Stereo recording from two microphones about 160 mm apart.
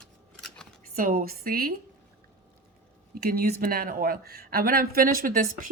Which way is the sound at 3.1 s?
75° right (ahead or behind).